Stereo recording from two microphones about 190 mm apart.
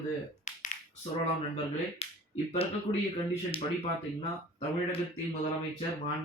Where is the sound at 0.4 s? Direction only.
40° left (ahead or behind).